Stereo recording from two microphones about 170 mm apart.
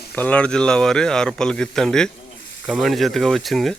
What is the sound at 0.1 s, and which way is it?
Speech, 10° left (ahead or behind).